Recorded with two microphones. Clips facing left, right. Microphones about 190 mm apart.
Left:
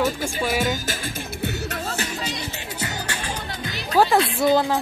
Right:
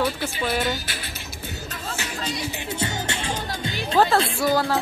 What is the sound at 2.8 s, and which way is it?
Music, 25° right (ahead or behind).